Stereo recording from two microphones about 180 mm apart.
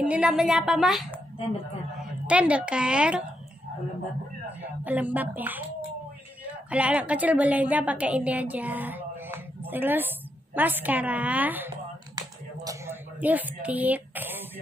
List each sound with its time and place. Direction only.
0.0 s a woman's voice: 5° right (ahead or behind)
4.6 s speech: 10° right (ahead or behind)
6.7 s a woman's voice: 5° right (ahead or behind)
12.2 s finger snapping: 20° right (ahead or behind)
13.2 s a woman's voice: 10° right (ahead or behind)